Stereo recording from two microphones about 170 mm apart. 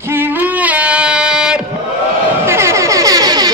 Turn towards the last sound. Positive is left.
turn(degrees=-20)  # may be behind; listen again after turning